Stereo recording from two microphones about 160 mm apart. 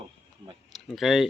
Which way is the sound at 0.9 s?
Centre (ahead or behind).